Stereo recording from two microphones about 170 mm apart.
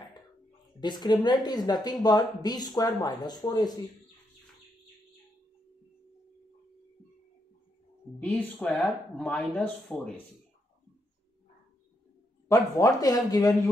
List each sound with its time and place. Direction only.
0.7 s speech: 25° left (ahead or behind)
8.2 s speech: 10° left (ahead or behind)
12.4 s speech: 20° left (ahead or behind)